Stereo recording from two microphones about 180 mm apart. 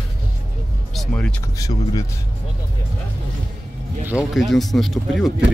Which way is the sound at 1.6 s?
20° left (ahead or behind).